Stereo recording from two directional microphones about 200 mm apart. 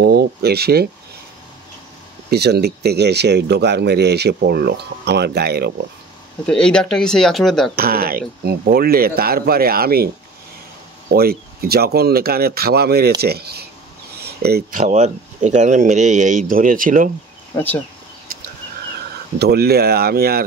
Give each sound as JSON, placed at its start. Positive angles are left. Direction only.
{"t": 0.0, "sound": "speech", "side_deg": -55}
{"t": 2.2, "sound": "speech", "side_deg": -55}
{"t": 6.4, "sound": "speech", "side_deg": 5}
{"t": 7.7, "sound": "speech", "side_deg": -50}
{"t": 11.1, "sound": "speech", "side_deg": -50}
{"t": 17.6, "sound": "speech", "side_deg": 10}
{"t": 19.3, "sound": "speech", "side_deg": -50}